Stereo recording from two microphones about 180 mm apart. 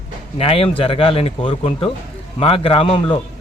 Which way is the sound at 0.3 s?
30° left (ahead or behind).